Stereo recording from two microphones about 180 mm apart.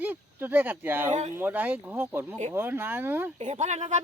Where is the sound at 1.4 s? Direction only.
10° right (ahead or behind).